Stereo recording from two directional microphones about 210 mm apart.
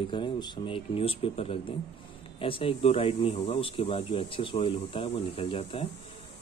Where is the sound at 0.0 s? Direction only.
20° left (ahead or behind).